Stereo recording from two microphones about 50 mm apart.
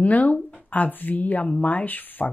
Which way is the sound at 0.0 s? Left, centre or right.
Left.